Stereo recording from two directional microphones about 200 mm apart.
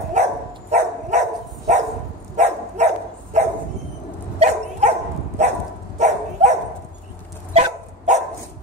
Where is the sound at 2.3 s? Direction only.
35° right (ahead or behind).